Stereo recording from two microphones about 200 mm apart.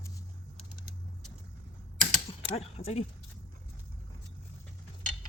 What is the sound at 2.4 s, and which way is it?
Speech, 30° left (ahead or behind).